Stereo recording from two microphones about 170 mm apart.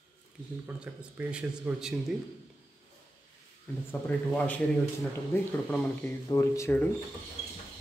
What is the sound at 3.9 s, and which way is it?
A man's voice, 10° left (ahead or behind).